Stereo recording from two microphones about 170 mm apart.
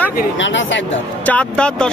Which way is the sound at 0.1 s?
75° left (ahead or behind).